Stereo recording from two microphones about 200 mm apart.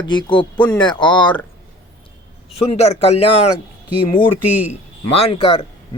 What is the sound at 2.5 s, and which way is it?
Speech, 30° left (ahead or behind).